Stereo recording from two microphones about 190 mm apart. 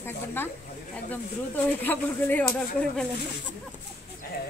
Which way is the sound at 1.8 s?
10° left (ahead or behind).